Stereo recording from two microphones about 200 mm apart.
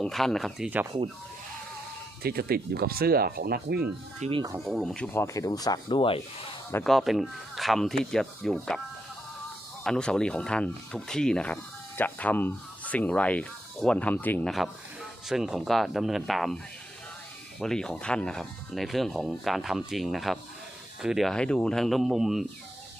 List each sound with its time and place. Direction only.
0.0 s speech: centre (ahead or behind)
2.2 s speech: 50° right (ahead or behind)
4.2 s speech: 25° right (ahead or behind)
4.6 s speech: centre (ahead or behind)
5.1 s speech: 15° left (ahead or behind)
6.8 s speech: centre (ahead or behind)
9.8 s speech: 5° left (ahead or behind)
17.6 s speech: 5° left (ahead or behind)